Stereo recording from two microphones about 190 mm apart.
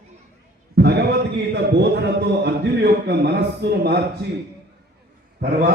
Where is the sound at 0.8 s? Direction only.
60° right (ahead or behind).